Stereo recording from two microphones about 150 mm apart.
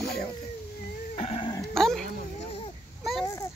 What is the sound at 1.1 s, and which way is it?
Dog, 45° left (ahead or behind).